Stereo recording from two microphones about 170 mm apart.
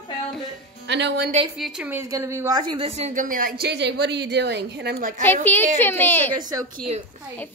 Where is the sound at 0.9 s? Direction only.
90° right.